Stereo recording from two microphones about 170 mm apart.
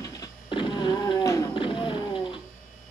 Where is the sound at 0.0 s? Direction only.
20° left (ahead or behind).